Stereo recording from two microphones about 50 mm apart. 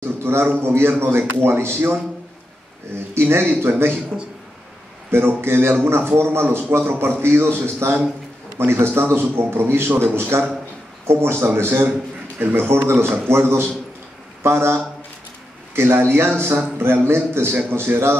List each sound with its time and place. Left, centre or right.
0.0 s a sound: right
0.6 s a man's voice: right
3.2 s a man's voice: right
5.1 s a man's voice: right